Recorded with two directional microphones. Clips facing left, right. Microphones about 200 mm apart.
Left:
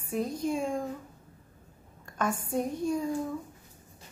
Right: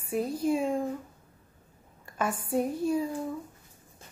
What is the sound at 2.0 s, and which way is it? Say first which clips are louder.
A woman's voice: even; 5° right (ahead or behind).